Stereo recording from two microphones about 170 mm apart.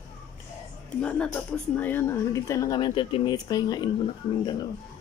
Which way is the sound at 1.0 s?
5° left (ahead or behind).